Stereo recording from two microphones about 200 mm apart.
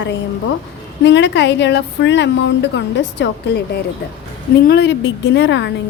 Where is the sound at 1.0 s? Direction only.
65° left (ahead or behind).